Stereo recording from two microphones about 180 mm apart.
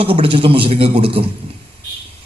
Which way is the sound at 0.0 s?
30° right (ahead or behind).